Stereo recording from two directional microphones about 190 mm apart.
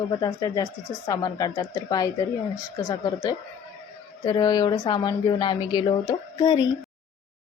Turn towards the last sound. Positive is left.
turn(degrees=20)  # may be behind; listen again after turning